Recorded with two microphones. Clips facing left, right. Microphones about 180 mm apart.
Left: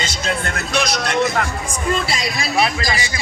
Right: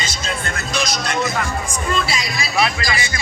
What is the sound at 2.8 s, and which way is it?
Speech, 40° left (ahead or behind).